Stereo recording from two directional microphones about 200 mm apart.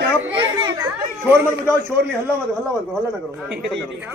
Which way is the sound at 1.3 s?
10° right (ahead or behind).